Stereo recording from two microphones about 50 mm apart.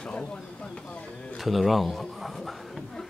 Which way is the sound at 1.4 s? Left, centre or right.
Centre.